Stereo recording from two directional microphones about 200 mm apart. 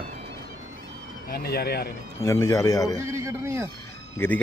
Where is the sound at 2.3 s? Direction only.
15° left (ahead or behind).